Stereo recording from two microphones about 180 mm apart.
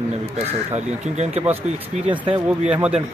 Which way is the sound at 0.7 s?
40° right (ahead or behind).